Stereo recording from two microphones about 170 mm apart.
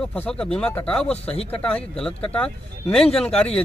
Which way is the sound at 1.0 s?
35° left (ahead or behind).